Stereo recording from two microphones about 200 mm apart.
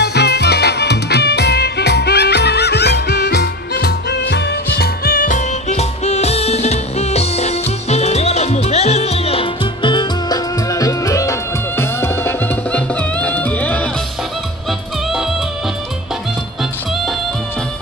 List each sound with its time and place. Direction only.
0.0 s music: 55° left (ahead or behind); by 13.8 s 10° left (ahead or behind)